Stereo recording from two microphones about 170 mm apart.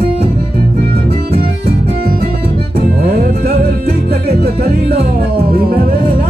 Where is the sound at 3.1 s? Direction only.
65° right (ahead or behind).